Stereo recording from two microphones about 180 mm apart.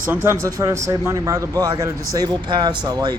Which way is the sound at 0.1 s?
15° right (ahead or behind).